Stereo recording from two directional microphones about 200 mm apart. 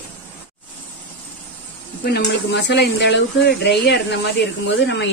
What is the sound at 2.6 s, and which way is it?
Speech, 55° left (ahead or behind).